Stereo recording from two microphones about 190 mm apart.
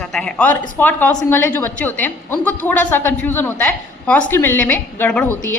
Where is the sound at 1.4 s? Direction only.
10° left (ahead or behind).